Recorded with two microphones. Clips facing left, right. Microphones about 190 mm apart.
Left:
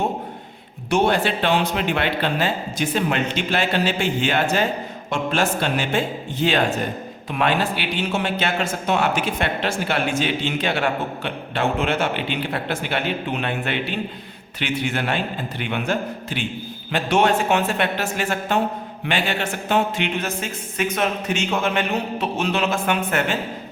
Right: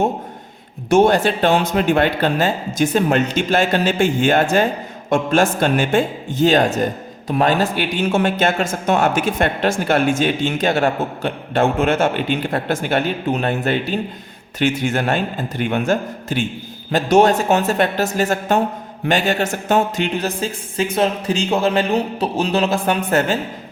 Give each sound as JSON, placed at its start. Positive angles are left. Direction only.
{"t": 0.9, "sound": "a man's voice", "side_deg": -45}